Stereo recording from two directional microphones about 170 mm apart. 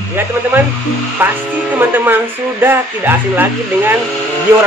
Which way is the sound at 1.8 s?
10° right (ahead or behind).